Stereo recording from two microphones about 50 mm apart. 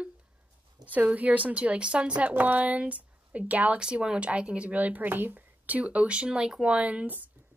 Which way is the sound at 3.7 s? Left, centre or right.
Centre.